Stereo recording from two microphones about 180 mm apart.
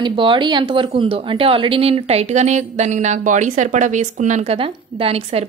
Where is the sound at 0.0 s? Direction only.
25° right (ahead or behind).